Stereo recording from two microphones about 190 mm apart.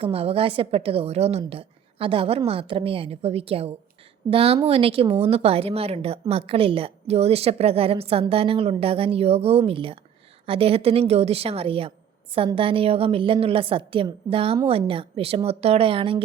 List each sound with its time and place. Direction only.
0.0 s a woman's voice: 30° right (ahead or behind)